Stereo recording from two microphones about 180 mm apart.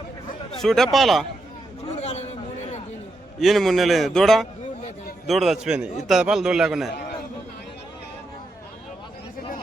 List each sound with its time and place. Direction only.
0.6 s a man's voice: centre (ahead or behind)
1.9 s a sound: 40° left (ahead or behind)
3.4 s a man's voice: centre (ahead or behind)